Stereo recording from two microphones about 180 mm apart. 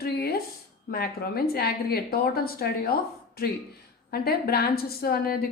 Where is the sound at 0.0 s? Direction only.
60° left (ahead or behind).